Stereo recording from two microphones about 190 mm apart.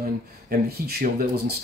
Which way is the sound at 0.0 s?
50° right (ahead or behind).